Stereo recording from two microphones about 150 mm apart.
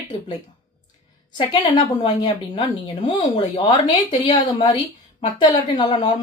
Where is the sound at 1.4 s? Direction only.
30° left (ahead or behind).